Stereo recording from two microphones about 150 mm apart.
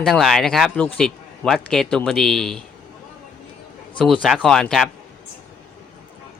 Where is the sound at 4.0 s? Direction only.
Centre (ahead or behind).